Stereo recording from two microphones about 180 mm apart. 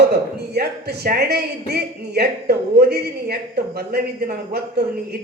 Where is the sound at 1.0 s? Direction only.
60° right (ahead or behind).